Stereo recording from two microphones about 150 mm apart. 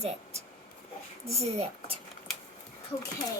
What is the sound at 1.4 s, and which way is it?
Speech, 45° right (ahead or behind).